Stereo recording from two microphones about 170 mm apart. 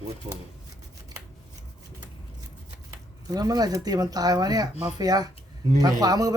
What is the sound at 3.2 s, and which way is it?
Speech, 20° right (ahead or behind).